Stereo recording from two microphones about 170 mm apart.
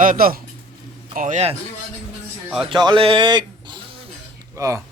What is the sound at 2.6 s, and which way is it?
Speech, 30° right (ahead or behind).